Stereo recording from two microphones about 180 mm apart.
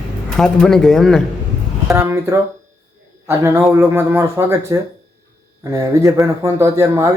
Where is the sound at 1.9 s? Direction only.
15° right (ahead or behind).